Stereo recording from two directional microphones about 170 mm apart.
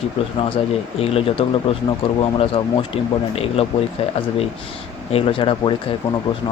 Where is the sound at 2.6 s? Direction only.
35° left (ahead or behind).